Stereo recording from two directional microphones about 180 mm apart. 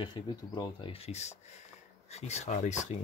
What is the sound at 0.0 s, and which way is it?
Speech, 25° left (ahead or behind).